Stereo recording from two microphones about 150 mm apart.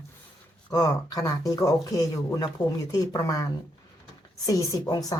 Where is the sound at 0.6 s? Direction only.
20° left (ahead or behind).